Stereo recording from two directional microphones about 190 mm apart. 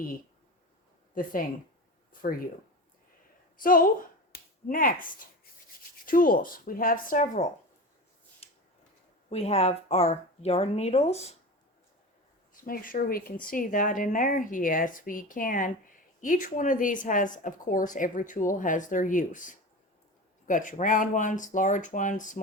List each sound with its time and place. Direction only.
1.1 s speech: 45° left (ahead or behind)
3.6 s speech: 45° left (ahead or behind)
8.4 s a sound: 30° left (ahead or behind)
9.3 s speech: 35° left (ahead or behind)
12.6 s speech: 45° left (ahead or behind)